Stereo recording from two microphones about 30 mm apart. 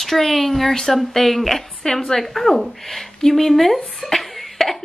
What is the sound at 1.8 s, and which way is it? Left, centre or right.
Speech, centre.